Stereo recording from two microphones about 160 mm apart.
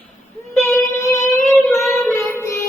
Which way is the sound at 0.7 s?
20° left (ahead or behind).